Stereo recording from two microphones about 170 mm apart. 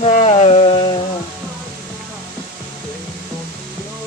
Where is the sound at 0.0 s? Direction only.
35° left (ahead or behind).